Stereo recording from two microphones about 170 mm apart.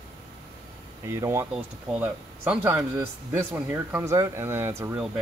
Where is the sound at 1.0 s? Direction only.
15° right (ahead or behind).